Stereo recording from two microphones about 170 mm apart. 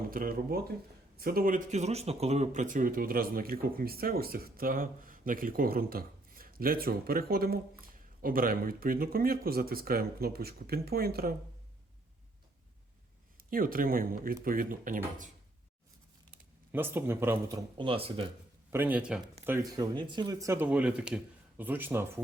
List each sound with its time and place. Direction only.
0.1 s speech: 60° right (ahead or behind)
13.3 s speech: 55° right (ahead or behind)
16.7 s speech: 15° right (ahead or behind)
17.7 s speech: 30° right (ahead or behind)
18.7 s speech: 10° right (ahead or behind)
19.5 s speech: 20° right (ahead or behind)